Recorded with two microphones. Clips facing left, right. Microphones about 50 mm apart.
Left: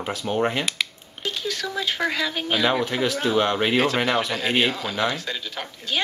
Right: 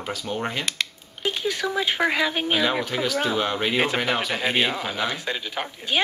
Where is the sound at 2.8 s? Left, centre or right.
Centre.